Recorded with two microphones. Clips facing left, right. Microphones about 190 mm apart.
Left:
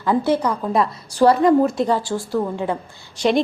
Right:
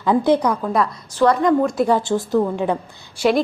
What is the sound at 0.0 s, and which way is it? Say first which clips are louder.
Speech: right 2 dB; 15° right (ahead or behind).